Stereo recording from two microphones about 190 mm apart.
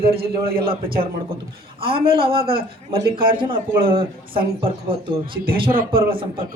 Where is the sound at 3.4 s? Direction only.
25° right (ahead or behind).